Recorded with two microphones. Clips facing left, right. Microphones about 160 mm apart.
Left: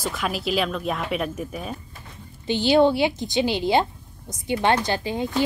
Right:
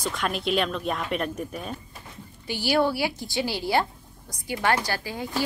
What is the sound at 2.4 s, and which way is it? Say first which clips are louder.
A woman's voice: left 6 dB; 20° left (ahead or behind).